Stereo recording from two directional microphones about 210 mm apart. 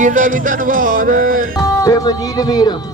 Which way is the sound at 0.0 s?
40° right (ahead or behind).